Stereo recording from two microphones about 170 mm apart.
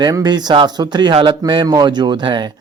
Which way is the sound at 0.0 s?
25° right (ahead or behind).